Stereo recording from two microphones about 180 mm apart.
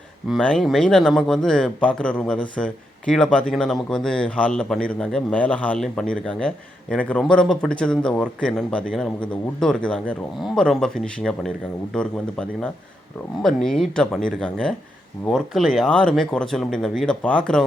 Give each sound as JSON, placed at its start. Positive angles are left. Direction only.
{"t": 0.3, "sound": "a man's voice", "side_deg": 5}